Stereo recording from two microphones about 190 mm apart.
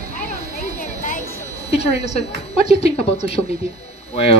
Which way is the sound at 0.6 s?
45° left (ahead or behind).